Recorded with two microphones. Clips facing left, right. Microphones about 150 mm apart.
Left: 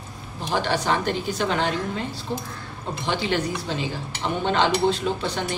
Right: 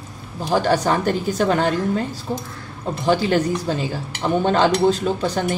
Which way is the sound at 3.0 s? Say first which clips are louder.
Right 7 dB; 40° right (ahead or behind).